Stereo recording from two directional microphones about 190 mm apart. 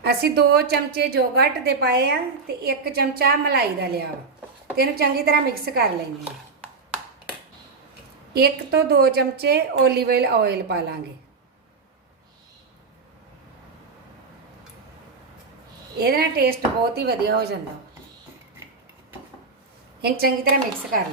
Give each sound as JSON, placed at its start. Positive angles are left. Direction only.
{"t": 0.0, "sound": "a woman's voice", "side_deg": -60}
{"t": 8.3, "sound": "a woman's voice", "side_deg": -55}
{"t": 16.0, "sound": "a woman's voice", "side_deg": -55}
{"t": 20.0, "sound": "a woman's voice", "side_deg": -55}